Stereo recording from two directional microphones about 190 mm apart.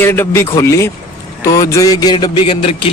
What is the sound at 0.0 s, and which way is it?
Speech, 10° left (ahead or behind).